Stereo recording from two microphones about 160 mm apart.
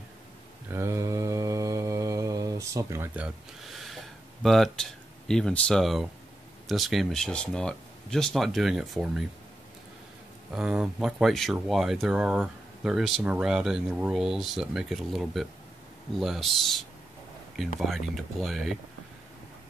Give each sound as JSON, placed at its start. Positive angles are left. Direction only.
{"t": 0.7, "sound": "mantra", "side_deg": -15}
{"t": 3.7, "sound": "a sound", "side_deg": 0}
{"t": 6.7, "sound": "speech", "side_deg": 0}
{"t": 10.5, "sound": "speech", "side_deg": -5}